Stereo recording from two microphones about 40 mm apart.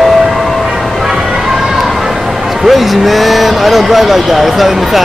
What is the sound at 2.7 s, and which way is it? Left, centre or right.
Speech, centre.